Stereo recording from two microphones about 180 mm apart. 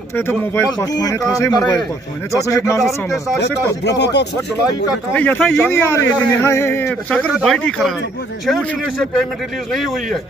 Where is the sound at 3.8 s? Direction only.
70° left (ahead or behind).